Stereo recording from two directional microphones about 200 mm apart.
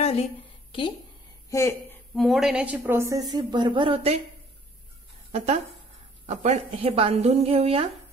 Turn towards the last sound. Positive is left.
turn(degrees=-30)  # may be behind; listen again after turning